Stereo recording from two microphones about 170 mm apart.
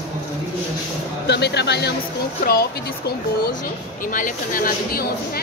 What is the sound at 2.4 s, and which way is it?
Speech, 65° left (ahead or behind).